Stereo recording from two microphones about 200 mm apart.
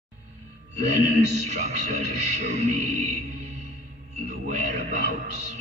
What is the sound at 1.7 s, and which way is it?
A man's voice, 35° right (ahead or behind).